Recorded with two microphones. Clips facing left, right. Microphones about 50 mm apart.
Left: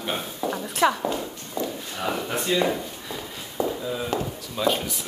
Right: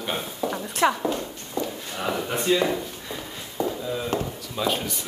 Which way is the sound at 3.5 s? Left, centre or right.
Centre.